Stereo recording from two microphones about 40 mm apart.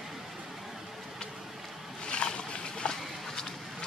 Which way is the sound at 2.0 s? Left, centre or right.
Left.